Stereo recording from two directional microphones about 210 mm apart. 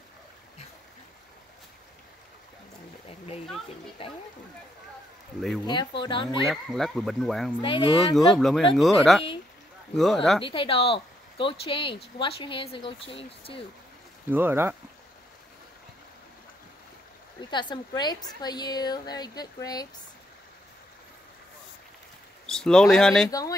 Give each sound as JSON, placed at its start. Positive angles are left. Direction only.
{"t": 3.1, "sound": "a sound", "side_deg": 30}
{"t": 4.0, "sound": "speech", "side_deg": 25}
{"t": 5.7, "sound": "speech", "side_deg": 20}
{"t": 6.5, "sound": "speech", "side_deg": 0}
{"t": 7.6, "sound": "speech", "side_deg": 25}
{"t": 8.3, "sound": "speech", "side_deg": 0}
{"t": 10.4, "sound": "speech", "side_deg": 25}
{"t": 14.3, "sound": "speech", "side_deg": -10}
{"t": 17.5, "sound": "speech", "side_deg": 20}
{"t": 22.5, "sound": "speech", "side_deg": 5}